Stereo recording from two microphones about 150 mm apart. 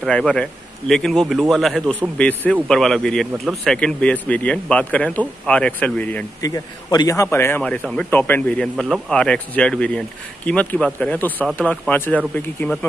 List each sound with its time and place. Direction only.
0.0 s a man's voice: 5° left (ahead or behind)
6.4 s speech: 25° left (ahead or behind)